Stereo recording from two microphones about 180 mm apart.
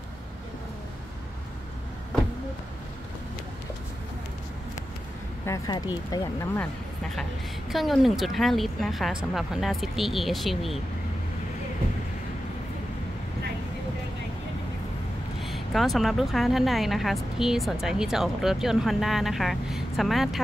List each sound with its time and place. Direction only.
5.5 s speech: 20° left (ahead or behind)
7.7 s a woman's voice: centre (ahead or behind)
15.4 s a woman's voice: centre (ahead or behind)